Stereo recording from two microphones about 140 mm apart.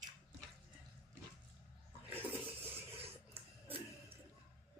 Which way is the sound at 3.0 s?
45° right (ahead or behind).